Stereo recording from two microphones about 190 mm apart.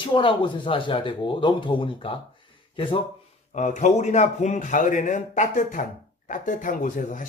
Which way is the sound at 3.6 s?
40° left (ahead or behind).